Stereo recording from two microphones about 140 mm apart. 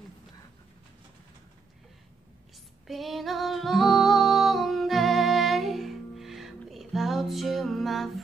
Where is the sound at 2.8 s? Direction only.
Centre (ahead or behind).